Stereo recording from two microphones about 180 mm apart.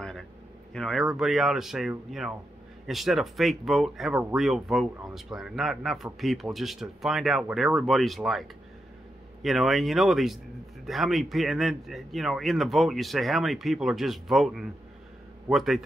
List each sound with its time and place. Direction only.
0.7 s speech: centre (ahead or behind)